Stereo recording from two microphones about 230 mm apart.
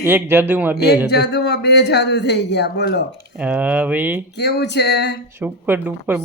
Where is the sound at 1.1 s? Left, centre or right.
Left.